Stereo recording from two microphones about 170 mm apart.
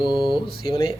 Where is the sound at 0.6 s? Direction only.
30° left (ahead or behind).